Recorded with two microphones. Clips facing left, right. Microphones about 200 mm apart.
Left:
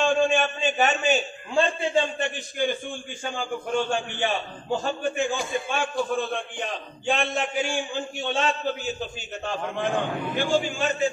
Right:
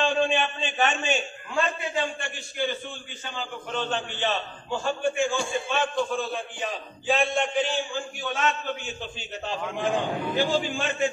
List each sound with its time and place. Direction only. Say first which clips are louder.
0.0 s a man's voice: left 3 dB; 45° left (ahead or behind); by 5.3 s 20° left (ahead or behind)
5.8 s a man's voice: even; centre (ahead or behind)
8.2 s a man's voice: left 2 dB; 30° left (ahead or behind)
9.8 s a man's voice: right 1 dB; 55° left (ahead or behind)
10.7 s a man's voice: left 1 dB; 40° left (ahead or behind)